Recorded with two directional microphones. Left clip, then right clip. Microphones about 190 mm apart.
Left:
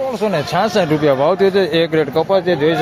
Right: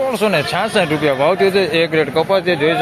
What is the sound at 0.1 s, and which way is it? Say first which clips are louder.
Speech: right 2 dB; centre (ahead or behind).